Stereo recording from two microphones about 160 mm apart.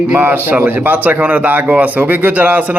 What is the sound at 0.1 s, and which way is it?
A man's voice, 10° right (ahead or behind).